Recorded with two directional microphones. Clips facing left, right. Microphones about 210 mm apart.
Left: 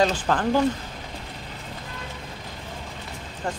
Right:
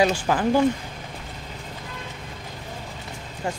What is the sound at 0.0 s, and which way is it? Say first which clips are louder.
Speech: right 1 dB; 10° right (ahead or behind).